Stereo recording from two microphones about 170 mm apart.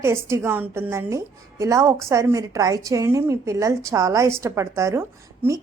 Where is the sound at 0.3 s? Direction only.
15° right (ahead or behind).